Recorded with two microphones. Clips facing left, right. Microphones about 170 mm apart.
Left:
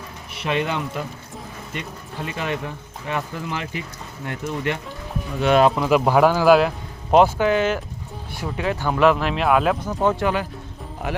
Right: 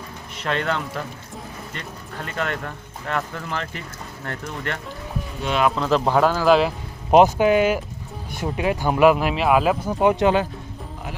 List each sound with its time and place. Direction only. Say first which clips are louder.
0.3 s speech: left 1 dB; 10° left (ahead or behind)
7.1 s speech: right 1 dB; 15° right (ahead or behind)
10.0 s speech: right 4 dB; 15° right (ahead or behind)